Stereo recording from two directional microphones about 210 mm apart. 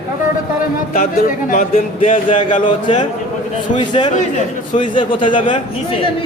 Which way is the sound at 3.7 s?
20° left (ahead or behind).